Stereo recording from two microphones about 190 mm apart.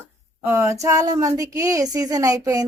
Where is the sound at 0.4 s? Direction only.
10° right (ahead or behind).